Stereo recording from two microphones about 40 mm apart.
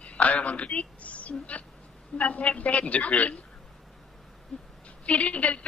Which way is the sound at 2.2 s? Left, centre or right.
Left.